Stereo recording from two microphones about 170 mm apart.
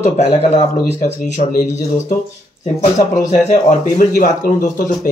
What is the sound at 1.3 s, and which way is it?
Speech, 45° left (ahead or behind).